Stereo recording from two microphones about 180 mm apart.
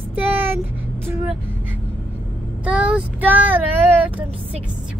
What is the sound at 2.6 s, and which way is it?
Child singing, 5° right (ahead or behind).